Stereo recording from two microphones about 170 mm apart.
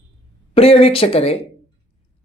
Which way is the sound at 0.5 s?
35° left (ahead or behind).